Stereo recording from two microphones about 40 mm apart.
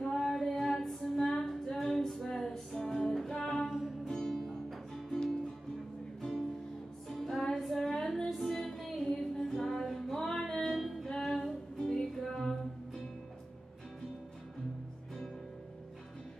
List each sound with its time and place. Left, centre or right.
0.0 s female singing: centre
3.6 s music: centre
4.0 s music: centre
7.1 s music: centre
7.5 s female singing: centre
8.0 s female singing: centre
8.3 s music: centre